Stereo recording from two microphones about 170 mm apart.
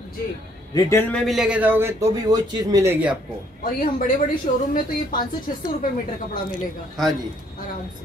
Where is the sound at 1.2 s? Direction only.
Centre (ahead or behind).